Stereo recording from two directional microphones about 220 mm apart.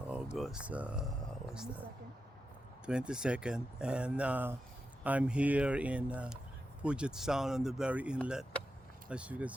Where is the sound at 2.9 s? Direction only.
5° right (ahead or behind).